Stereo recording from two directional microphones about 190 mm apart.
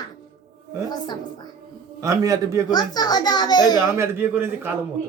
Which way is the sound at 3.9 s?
15° right (ahead or behind).